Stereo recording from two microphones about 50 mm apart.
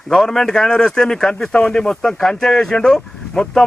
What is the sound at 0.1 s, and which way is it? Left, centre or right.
A man's voice, centre.